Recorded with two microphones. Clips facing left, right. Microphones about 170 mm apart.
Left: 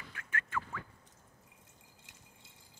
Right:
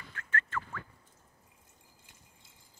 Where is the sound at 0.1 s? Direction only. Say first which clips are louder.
Right 2 dB; 10° left (ahead or behind).